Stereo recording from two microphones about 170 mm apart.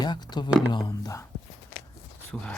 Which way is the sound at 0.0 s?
25° left (ahead or behind).